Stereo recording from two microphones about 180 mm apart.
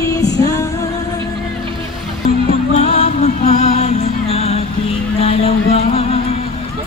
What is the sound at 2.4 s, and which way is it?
Music, 35° left (ahead or behind).